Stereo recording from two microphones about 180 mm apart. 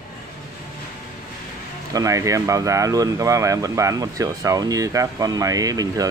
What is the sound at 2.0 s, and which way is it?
Speech, 20° right (ahead or behind).